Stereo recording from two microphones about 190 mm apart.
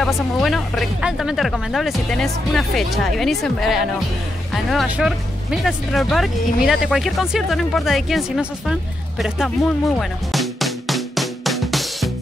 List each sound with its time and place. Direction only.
0.0 s speech: centre (ahead or behind)
9.2 s music: centre (ahead or behind)